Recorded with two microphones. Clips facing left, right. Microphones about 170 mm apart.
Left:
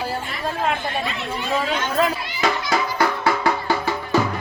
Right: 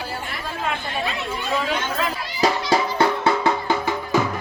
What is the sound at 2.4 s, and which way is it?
Music, 30° right (ahead or behind).